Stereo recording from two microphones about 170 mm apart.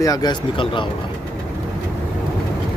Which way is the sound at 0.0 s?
25° left (ahead or behind).